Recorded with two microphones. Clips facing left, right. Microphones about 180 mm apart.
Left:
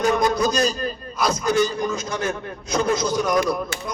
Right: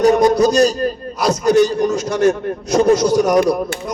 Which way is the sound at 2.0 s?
70° right (ahead or behind).